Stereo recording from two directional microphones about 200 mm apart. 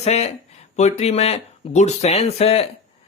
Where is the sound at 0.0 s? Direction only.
35° left (ahead or behind).